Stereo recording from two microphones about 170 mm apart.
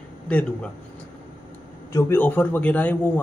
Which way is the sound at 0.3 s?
5° left (ahead or behind).